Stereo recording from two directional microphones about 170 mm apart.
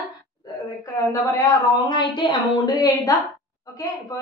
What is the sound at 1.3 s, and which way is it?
A woman's voice, 25° left (ahead or behind).